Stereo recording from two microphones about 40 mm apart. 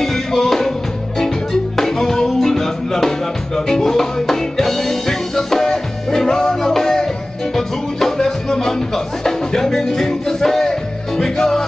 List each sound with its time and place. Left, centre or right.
0.0 s music: centre